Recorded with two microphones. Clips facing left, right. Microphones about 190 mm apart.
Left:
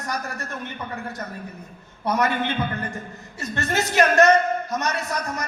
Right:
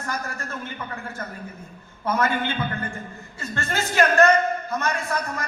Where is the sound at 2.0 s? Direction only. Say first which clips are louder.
Left 1 dB; 20° left (ahead or behind).